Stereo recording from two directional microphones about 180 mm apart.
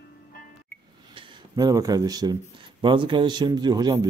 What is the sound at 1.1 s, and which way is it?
A man's voice, 20° right (ahead or behind).